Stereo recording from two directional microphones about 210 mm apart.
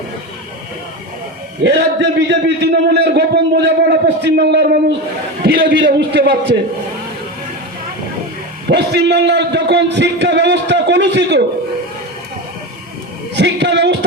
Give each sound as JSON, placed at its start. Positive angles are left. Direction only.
{"t": 1.6, "sound": "a man's voice", "side_deg": -55}
{"t": 8.6, "sound": "a man's voice", "side_deg": -55}
{"t": 13.3, "sound": "a sound", "side_deg": -55}